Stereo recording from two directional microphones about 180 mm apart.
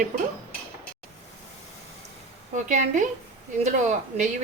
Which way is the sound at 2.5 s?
45° right (ahead or behind).